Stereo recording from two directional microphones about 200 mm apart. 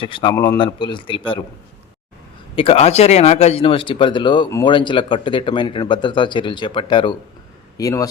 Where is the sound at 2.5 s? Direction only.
30° left (ahead or behind).